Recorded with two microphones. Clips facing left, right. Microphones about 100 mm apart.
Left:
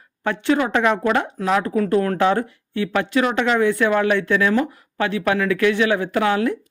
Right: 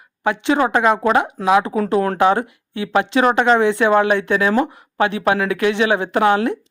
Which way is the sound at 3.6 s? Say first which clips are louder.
Right 3 dB; 25° right (ahead or behind).